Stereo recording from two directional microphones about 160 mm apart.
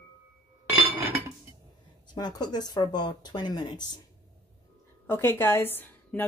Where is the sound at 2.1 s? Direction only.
25° left (ahead or behind).